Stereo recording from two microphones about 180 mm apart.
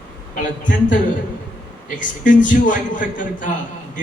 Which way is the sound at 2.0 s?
45° left (ahead or behind).